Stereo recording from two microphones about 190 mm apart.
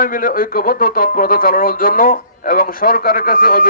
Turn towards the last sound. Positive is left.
turn(degrees=50)  # may be behind; listen again after turning